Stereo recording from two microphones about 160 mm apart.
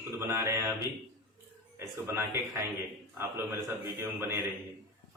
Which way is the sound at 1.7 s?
15° right (ahead or behind).